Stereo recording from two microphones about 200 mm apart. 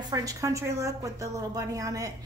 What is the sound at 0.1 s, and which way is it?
A woman's voice, 15° right (ahead or behind).